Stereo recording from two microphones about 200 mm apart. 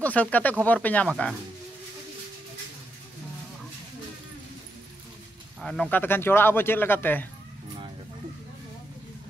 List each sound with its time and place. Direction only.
0.0 s speech: 10° left (ahead or behind)
5.6 s speech: 5° left (ahead or behind)